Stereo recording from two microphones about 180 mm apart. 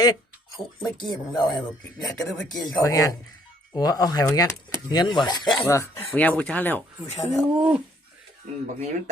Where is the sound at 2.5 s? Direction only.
20° left (ahead or behind).